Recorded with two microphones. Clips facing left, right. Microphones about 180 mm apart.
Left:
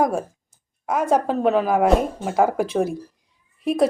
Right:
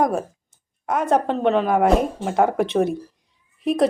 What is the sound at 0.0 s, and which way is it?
A woman's voice, centre (ahead or behind).